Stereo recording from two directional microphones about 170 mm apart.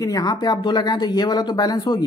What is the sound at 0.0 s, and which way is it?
Speech, 20° left (ahead or behind).